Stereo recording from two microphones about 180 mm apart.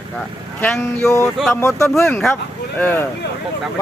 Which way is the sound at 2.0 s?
5° left (ahead or behind).